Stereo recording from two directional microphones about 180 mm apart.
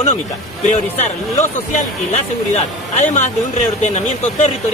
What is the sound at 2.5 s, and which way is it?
Speech, 40° left (ahead or behind).